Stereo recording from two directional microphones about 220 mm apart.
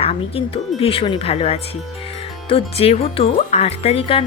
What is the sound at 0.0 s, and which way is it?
Speech, 25° left (ahead or behind).